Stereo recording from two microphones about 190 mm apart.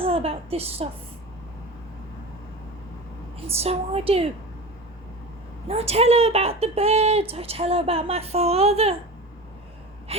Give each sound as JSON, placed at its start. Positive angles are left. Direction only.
{"t": 0.0, "sound": "speech", "side_deg": -30}
{"t": 3.4, "sound": "speech", "side_deg": -30}
{"t": 5.6, "sound": "speech", "side_deg": -30}
{"t": 10.1, "sound": "speech", "side_deg": -30}